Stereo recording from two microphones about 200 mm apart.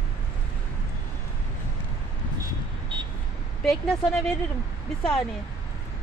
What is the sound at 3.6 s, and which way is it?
Speech, centre (ahead or behind).